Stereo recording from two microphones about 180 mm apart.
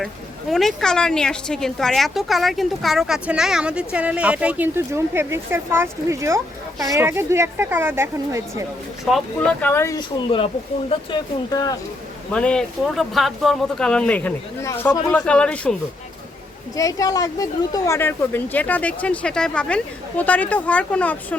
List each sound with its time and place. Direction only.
0.0 s speech: centre (ahead or behind); by 8.6 s 15° right (ahead or behind)
9.0 s speech: centre (ahead or behind); by 11.8 s 20° left (ahead or behind)
12.3 s speech: 5° left (ahead or behind)
16.7 s speech: 20° left (ahead or behind)